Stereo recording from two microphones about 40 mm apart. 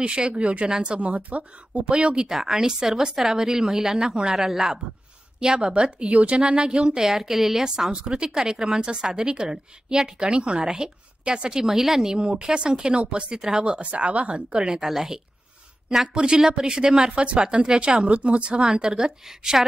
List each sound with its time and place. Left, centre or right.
0.0 s a woman's voice: right
2.2 s a woman's voice: centre
4.4 s a woman's voice: centre
5.4 s a woman's voice: centre
7.1 s a woman's voice: centre; by 11.6 s right
11.6 s a woman's voice: centre
13.7 s speech: right
14.3 s a woman's voice: right
18.6 s a woman's voice: centre